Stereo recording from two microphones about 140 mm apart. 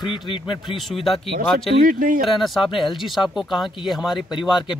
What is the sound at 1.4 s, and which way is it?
Speech, 85° right.